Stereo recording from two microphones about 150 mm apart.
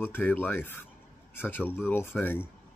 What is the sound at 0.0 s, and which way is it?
Speech, 15° left (ahead or behind).